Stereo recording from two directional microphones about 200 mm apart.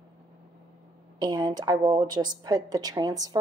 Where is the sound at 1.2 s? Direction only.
20° right (ahead or behind).